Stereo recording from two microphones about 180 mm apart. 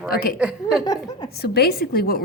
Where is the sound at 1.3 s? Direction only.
60° left (ahead or behind).